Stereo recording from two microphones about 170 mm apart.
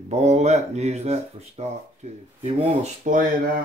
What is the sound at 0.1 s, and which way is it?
Speech, 40° right (ahead or behind).